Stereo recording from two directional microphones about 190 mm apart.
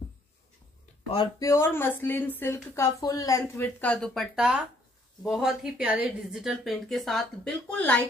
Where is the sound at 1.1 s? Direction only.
20° left (ahead or behind).